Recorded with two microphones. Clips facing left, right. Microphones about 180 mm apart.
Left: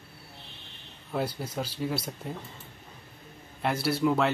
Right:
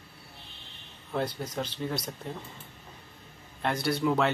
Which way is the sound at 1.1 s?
10° left (ahead or behind).